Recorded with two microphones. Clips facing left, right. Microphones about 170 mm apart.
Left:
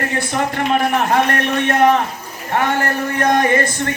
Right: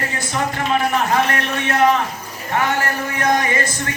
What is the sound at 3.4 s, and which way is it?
Speech, 50° left (ahead or behind).